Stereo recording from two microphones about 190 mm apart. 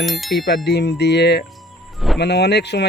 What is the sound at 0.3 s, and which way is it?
Speech, 60° left (ahead or behind).